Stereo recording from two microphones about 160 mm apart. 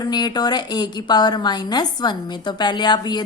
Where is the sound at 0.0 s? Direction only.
25° left (ahead or behind).